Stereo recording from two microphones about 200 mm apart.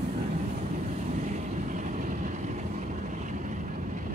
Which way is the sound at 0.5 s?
35° right (ahead or behind).